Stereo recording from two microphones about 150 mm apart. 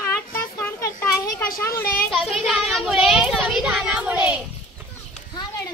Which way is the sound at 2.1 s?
Centre (ahead or behind).